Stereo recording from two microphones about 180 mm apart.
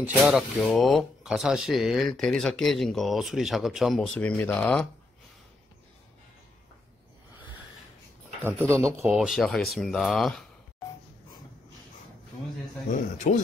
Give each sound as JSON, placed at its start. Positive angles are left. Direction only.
{"t": 0.2, "sound": "speech", "side_deg": -5}
{"t": 8.5, "sound": "speech", "side_deg": -15}
{"t": 13.2, "sound": "speech", "side_deg": 40}